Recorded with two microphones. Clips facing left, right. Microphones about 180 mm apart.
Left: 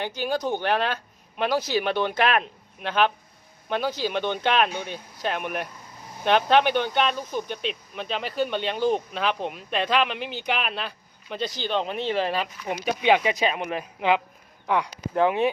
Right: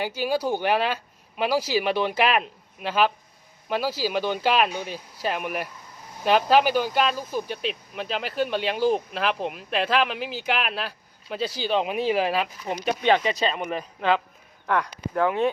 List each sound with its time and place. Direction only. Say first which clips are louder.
0.0 s speech: right 2 dB; 10° right (ahead or behind)
12.8 s speech: even; 5° left (ahead or behind)